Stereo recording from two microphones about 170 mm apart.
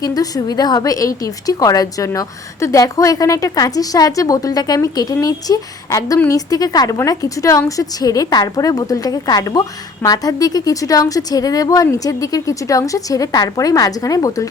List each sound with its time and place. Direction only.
0.0 s a woman's voice: 20° left (ahead or behind)